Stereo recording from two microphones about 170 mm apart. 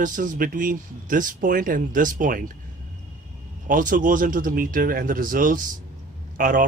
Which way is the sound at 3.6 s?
50° right (ahead or behind).